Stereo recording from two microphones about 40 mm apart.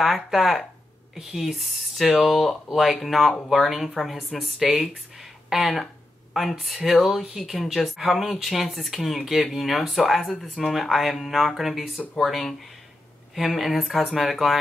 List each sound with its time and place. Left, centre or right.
0.0 s speech: centre
1.1 s speech: centre